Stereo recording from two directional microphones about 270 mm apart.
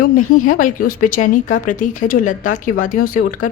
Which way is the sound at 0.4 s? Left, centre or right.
Left.